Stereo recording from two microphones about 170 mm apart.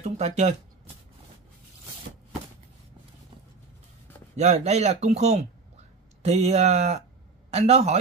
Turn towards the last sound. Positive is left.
turn(degrees=-40)  # may be behind; listen again after turning